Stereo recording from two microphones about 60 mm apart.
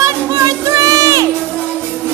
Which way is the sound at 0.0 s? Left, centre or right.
Right.